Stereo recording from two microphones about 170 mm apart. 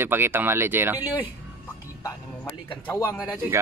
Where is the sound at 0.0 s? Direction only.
15° right (ahead or behind).